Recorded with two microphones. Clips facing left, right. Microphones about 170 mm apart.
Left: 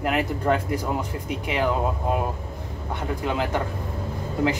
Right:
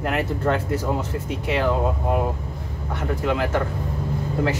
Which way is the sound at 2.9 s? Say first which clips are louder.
Right 3 dB; 20° left (ahead or behind).